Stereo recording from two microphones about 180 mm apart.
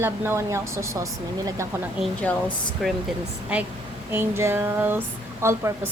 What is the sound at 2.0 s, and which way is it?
Speech, 10° left (ahead or behind).